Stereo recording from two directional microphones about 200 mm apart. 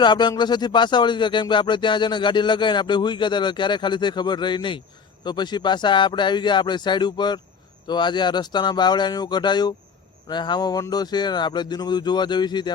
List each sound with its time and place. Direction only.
0.0 s speech: 20° left (ahead or behind)